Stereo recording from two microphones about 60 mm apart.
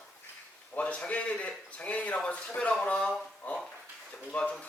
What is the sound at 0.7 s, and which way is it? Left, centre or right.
A man's voice, left.